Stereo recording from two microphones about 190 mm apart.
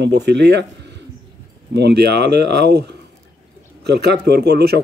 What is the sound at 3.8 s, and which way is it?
Speech, 60° right (ahead or behind).